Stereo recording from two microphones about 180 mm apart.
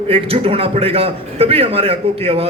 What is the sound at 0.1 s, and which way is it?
A man's voice, 30° right (ahead or behind).